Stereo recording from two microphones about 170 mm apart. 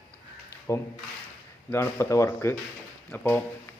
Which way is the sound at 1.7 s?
15° left (ahead or behind).